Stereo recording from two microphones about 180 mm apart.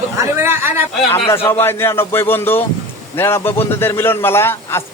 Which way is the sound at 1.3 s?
15° left (ahead or behind).